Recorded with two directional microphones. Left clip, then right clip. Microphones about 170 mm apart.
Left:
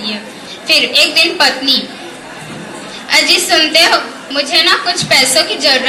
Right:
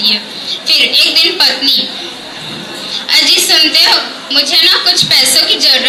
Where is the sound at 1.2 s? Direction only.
55° left (ahead or behind).